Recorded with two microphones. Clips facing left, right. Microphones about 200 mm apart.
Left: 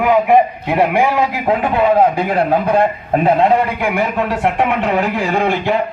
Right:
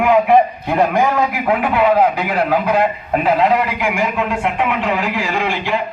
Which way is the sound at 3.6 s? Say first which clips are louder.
Left 2 dB; 55° left (ahead or behind).